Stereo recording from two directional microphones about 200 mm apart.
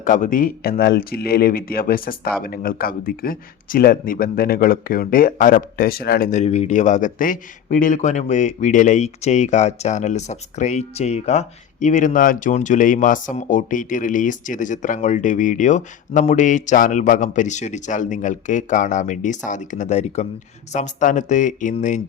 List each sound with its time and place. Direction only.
0.0 s speech: 40° left (ahead or behind)